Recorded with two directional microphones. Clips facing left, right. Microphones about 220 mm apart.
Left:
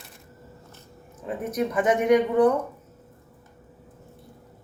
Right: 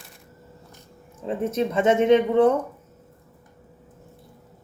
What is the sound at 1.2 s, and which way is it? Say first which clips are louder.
Speech: right 3 dB; 25° right (ahead or behind).